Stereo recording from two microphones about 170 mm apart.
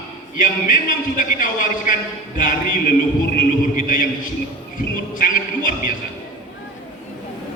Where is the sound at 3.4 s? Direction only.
55° left (ahead or behind).